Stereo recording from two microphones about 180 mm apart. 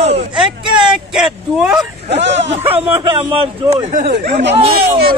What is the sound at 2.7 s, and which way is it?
A man's voice, 30° right (ahead or behind).